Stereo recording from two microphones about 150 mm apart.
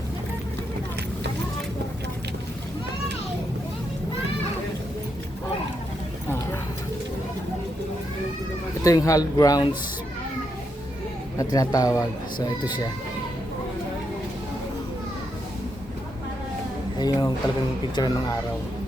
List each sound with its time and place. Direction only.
8.8 s a man's voice: 20° left (ahead or behind)
11.3 s a man's voice: 25° left (ahead or behind)
17.0 s a man's voice: 30° left (ahead or behind)